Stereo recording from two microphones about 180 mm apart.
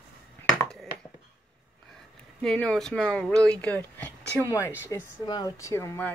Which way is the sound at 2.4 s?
5° left (ahead or behind).